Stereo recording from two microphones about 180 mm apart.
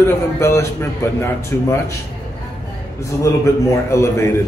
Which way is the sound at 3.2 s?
15° left (ahead or behind).